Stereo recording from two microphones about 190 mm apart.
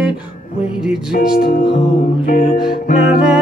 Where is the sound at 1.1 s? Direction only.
50° left (ahead or behind).